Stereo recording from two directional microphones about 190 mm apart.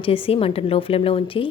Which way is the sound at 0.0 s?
30° left (ahead or behind).